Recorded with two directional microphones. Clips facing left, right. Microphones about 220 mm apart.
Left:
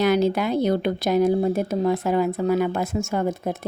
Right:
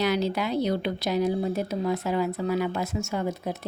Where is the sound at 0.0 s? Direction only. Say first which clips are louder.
Left 6 dB; 50° left (ahead or behind).